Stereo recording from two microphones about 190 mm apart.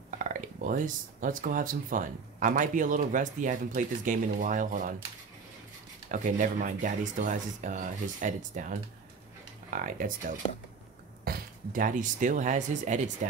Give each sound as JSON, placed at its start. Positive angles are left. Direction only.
{"t": 0.2, "sound": "speech", "side_deg": -45}
{"t": 6.0, "sound": "speech", "side_deg": -40}